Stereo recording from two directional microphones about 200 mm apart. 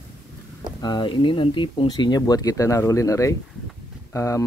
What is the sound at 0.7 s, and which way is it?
Speech, 20° left (ahead or behind).